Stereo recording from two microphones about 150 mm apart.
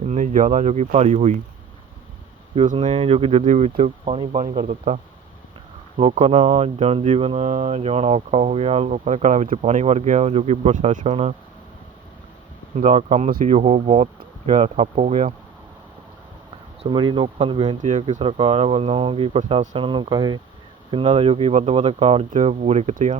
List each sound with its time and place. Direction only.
0.1 s speech: 55° right (ahead or behind)
2.7 s speech: 40° right (ahead or behind)
6.0 s speech: 45° right (ahead or behind)
12.7 s speech: 50° right (ahead or behind)
16.8 s speech: 35° right (ahead or behind)
17.8 s speech: 55° right (ahead or behind); by 20.4 s 30° right (ahead or behind)
20.9 s speech: 45° right (ahead or behind)